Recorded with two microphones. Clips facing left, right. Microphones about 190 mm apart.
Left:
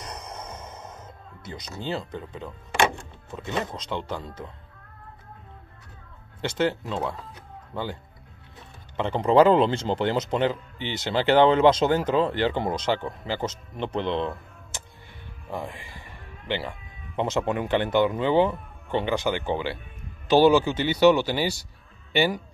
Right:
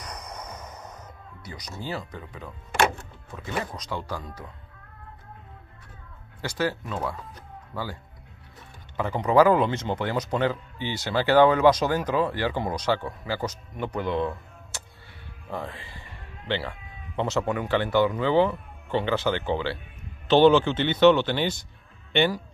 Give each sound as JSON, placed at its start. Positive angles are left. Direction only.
{"t": 0.0, "sound": "music", "side_deg": 25}
{"t": 1.8, "sound": "a man's voice", "side_deg": 25}
{"t": 6.4, "sound": "a man's voice", "side_deg": 25}
{"t": 15.5, "sound": "music", "side_deg": 15}
{"t": 17.2, "sound": "speech", "side_deg": 15}